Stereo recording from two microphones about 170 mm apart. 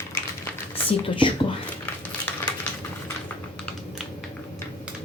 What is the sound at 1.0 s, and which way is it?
Speech, 30° left (ahead or behind).